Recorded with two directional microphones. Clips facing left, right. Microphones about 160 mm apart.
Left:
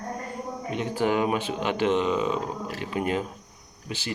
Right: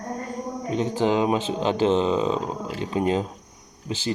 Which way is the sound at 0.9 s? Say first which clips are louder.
Right 2 dB; 20° right (ahead or behind).